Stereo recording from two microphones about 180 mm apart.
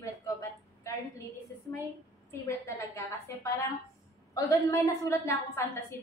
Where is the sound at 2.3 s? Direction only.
15° left (ahead or behind).